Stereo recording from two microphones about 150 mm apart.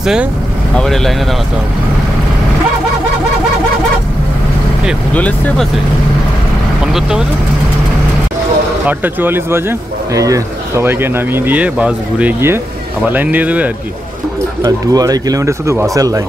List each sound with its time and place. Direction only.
0.0 s speech: 5° right (ahead or behind)
5.1 s speech: 10° left (ahead or behind)
6.9 s speech: 5° right (ahead or behind)
8.8 s speech: 15° right (ahead or behind)
14.6 s speech: 25° right (ahead or behind)